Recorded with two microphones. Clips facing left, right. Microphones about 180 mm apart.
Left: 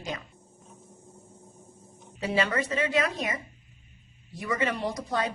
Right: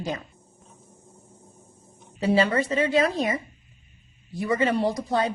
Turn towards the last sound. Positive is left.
turn(degrees=-30)  # may be behind; listen again after turning